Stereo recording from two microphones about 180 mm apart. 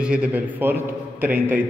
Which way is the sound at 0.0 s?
5° right (ahead or behind).